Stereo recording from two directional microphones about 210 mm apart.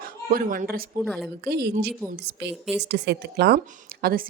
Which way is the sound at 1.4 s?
50° right (ahead or behind).